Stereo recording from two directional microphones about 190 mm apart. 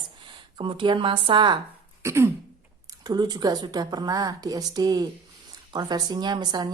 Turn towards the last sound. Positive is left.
turn(degrees=-20)  # may be behind; listen again after turning